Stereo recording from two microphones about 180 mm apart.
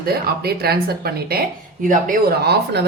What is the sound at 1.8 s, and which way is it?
Speech, 50° right (ahead or behind).